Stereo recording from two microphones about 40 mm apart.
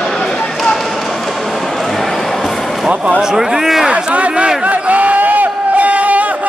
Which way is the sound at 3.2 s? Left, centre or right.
Centre.